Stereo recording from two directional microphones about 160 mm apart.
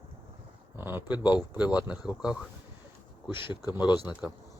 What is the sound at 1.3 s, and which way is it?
Speech, 10° right (ahead or behind).